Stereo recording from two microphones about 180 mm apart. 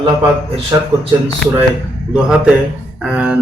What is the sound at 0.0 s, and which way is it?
Speech, 30° right (ahead or behind).